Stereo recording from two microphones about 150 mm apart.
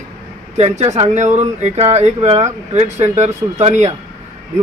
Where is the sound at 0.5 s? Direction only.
45° right (ahead or behind).